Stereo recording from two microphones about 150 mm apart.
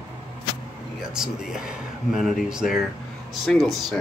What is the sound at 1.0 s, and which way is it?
Speech, 5° right (ahead or behind).